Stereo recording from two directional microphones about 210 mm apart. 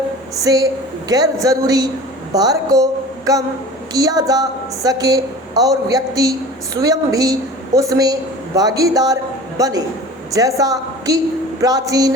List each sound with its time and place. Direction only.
0.4 s a woman's voice: 15° right (ahead or behind)
2.3 s a sound: 15° right (ahead or behind)
3.9 s a woman's voice: 15° right (ahead or behind)